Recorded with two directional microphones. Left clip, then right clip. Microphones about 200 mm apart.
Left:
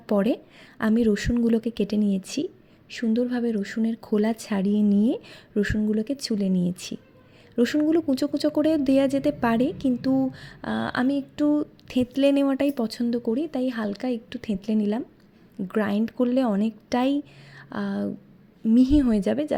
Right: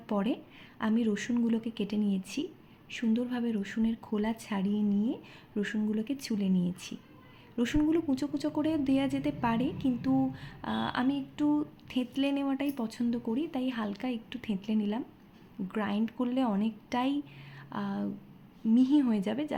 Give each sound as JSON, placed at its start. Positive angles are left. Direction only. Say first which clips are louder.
{"t": 0.1, "sound": "a woman's voice", "louder": "left 9 dB", "side_deg": 40}